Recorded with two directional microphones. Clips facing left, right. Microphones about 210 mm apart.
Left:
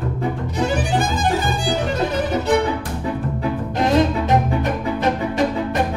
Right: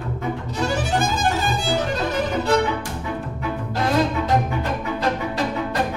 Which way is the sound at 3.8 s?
20° left (ahead or behind).